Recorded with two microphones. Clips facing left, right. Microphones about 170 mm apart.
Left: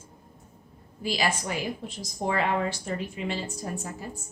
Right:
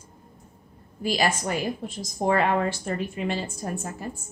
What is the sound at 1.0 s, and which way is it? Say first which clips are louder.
A woman's voice: right 3 dB; 50° right (ahead or behind).